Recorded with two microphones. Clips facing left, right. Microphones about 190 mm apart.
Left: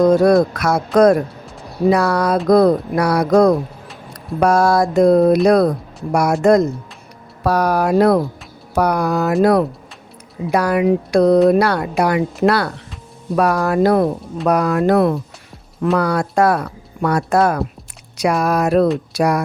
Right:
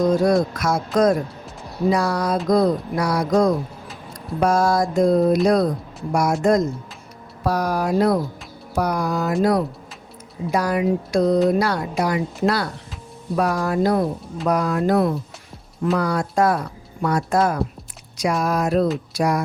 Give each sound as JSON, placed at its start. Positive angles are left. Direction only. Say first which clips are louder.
{"t": 0.0, "sound": "speech", "louder": "left 6 dB", "side_deg": 65}